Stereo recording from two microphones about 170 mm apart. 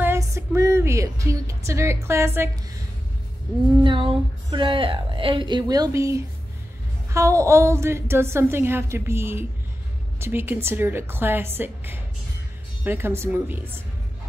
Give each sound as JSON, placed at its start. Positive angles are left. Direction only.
{"t": 0.0, "sound": "music", "side_deg": -15}
{"t": 3.8, "sound": "a woman's voice", "side_deg": -30}